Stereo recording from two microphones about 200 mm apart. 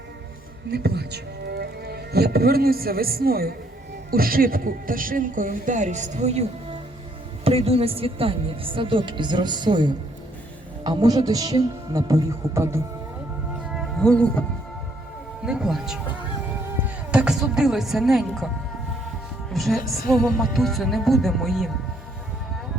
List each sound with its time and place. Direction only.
0.7 s a man's voice: 55° right (ahead or behind); by 6.4 s 35° right (ahead or behind)
7.4 s a woman's voice: 30° right (ahead or behind)
13.6 s music: 5° right (ahead or behind)
15.4 s music: 5° right (ahead or behind)
19.5 s speech: centre (ahead or behind)